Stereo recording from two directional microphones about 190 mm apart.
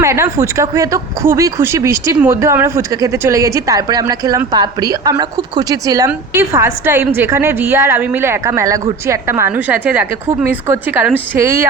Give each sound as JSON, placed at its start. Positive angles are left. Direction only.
{"t": 0.0, "sound": "speech", "side_deg": -15}